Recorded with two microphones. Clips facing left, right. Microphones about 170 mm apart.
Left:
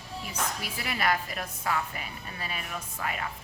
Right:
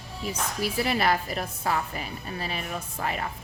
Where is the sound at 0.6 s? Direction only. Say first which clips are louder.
Right 7 dB; 30° right (ahead or behind).